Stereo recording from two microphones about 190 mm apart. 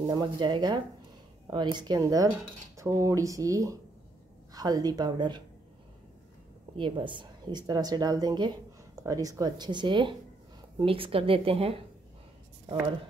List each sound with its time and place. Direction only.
0.0 s a woman's voice: 20° right (ahead or behind)
6.8 s a woman's voice: 25° right (ahead or behind)